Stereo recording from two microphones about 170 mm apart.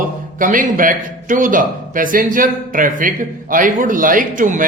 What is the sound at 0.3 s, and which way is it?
Speech, 50° right (ahead or behind).